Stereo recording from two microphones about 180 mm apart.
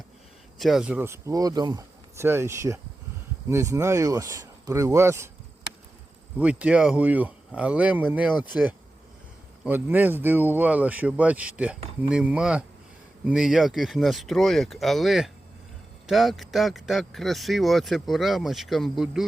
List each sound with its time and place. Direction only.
0.6 s speech: centre (ahead or behind)
6.4 s speech: 5° right (ahead or behind)
9.6 s speech: 10° right (ahead or behind)